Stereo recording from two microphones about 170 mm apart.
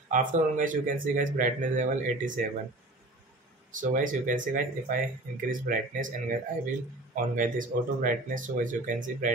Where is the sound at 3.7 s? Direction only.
50° right (ahead or behind).